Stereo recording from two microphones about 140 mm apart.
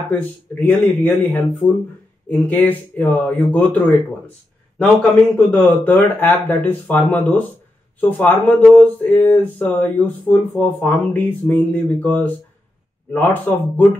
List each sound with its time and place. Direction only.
0.1 s speech: 15° left (ahead or behind)
5.5 s speech: 15° left (ahead or behind)